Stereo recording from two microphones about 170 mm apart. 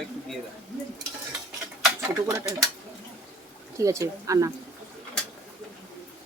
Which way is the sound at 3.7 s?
20° right (ahead or behind).